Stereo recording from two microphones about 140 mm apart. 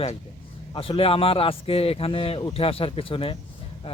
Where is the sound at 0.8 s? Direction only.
40° left (ahead or behind).